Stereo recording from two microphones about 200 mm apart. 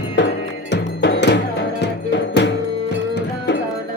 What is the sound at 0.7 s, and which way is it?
Music, 60° left (ahead or behind).